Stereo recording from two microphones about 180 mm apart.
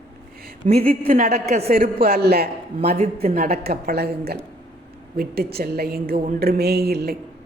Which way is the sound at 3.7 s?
60° right (ahead or behind).